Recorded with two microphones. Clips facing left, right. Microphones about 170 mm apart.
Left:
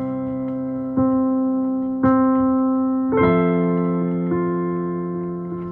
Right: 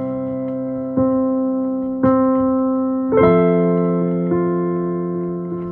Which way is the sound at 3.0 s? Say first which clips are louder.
Right 7 dB; 50° right (ahead or behind).